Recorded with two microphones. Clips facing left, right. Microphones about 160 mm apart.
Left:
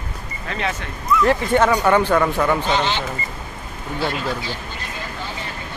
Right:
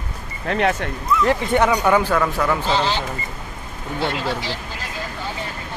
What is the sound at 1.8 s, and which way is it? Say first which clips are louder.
Speech: left 1 dB; 5° right (ahead or behind).